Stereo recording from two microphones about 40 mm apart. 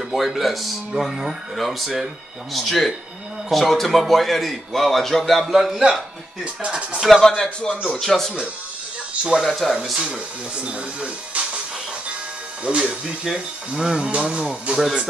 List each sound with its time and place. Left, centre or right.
0.1 s a man's voice: centre
0.9 s speech: centre
1.5 s a man's voice: centre
5.5 s speech: centre
6.4 s speech: right
7.2 s speech: centre
8.0 s speech: centre
9.2 s speech: centre
9.5 s a man's voice: centre
9.9 s speech: right
12.6 s speech: right
13.2 s speech: centre
14.8 s speech: centre